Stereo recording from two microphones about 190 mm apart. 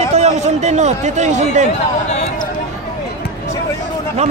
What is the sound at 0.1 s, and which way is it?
A man's voice, 35° right (ahead or behind).